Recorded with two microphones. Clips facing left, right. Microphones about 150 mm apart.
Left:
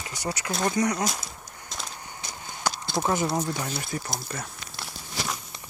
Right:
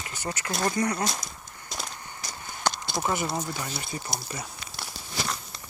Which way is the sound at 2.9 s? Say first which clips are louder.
Left 6 dB; 15° left (ahead or behind).